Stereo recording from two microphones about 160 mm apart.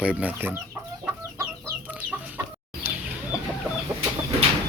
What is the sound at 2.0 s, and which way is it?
Chicken, 10° right (ahead or behind).